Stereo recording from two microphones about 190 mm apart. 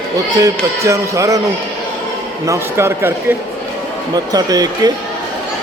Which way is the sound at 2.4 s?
15° right (ahead or behind).